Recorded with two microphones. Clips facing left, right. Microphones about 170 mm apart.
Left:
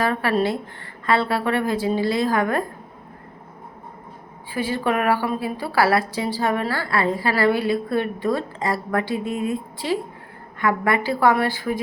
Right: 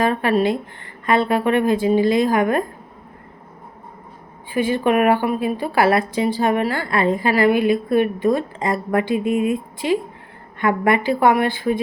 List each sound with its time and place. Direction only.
0.0 s a woman's voice: 20° right (ahead or behind)
4.5 s a woman's voice: 20° right (ahead or behind)
10.6 s a woman's voice: 20° right (ahead or behind)